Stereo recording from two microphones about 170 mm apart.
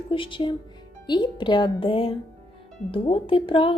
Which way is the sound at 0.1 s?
30° left (ahead or behind).